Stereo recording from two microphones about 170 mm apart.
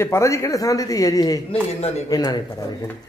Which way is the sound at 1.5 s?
35° left (ahead or behind).